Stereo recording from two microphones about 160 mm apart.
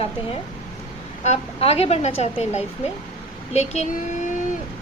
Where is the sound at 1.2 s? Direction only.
40° left (ahead or behind).